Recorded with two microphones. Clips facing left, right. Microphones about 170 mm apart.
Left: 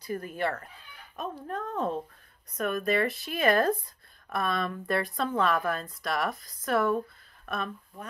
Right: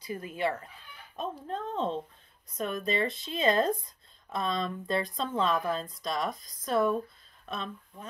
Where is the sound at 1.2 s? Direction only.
25° right (ahead or behind).